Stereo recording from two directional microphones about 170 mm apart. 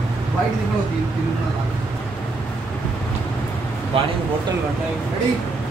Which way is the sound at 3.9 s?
35° right (ahead or behind).